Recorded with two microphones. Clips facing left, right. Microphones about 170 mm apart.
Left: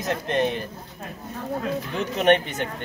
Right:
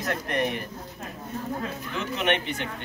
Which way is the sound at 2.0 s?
40° left (ahead or behind).